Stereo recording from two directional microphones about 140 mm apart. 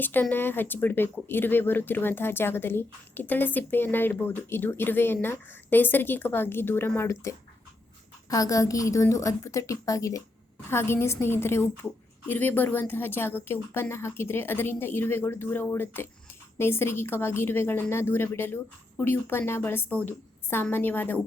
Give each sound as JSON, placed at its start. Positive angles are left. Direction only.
{"t": 0.0, "sound": "a woman's voice", "side_deg": 15}